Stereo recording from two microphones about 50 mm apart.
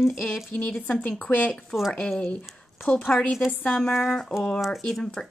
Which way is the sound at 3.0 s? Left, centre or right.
Centre.